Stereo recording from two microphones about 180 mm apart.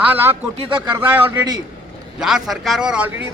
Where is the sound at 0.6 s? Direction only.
30° right (ahead or behind).